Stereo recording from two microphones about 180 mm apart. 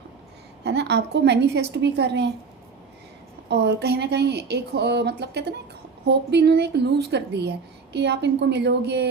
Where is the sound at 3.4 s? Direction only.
70° right (ahead or behind).